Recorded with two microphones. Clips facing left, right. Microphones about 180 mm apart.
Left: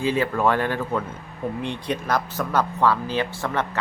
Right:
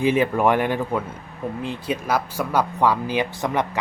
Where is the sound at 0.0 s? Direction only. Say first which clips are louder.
Right 3 dB; 15° right (ahead or behind).